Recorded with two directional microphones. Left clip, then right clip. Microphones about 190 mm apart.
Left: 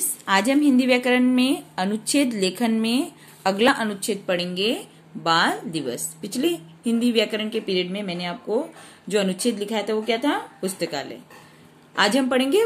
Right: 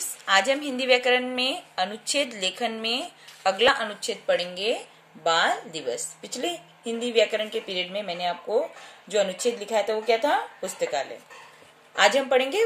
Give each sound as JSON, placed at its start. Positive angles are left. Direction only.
{"t": 0.0, "sound": "a woman's voice", "side_deg": 0}